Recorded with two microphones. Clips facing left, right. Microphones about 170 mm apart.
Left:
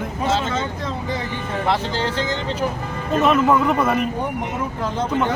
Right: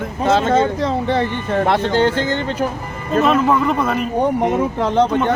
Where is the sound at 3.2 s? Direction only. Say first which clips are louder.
Even; centre (ahead or behind).